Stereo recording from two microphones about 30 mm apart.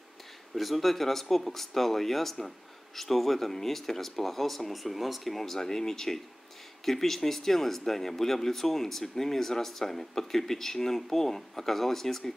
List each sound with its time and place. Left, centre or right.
0.6 s speech: centre
5.4 s speech: centre